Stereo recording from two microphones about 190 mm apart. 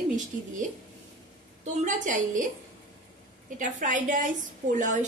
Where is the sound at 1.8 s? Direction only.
40° right (ahead or behind).